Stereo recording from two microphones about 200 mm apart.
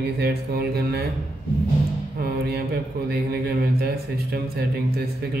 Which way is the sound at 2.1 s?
50° right (ahead or behind).